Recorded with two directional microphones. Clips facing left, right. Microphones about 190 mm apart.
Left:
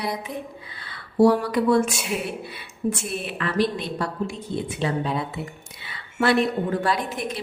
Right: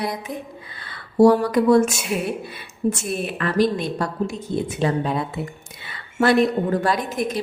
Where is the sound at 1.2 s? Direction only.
45° right (ahead or behind).